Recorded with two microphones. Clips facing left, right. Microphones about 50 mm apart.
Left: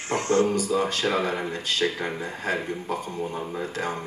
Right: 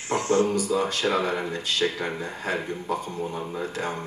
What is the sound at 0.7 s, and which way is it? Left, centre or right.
Speech, left.